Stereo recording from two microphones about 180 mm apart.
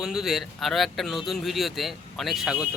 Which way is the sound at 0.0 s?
Centre (ahead or behind).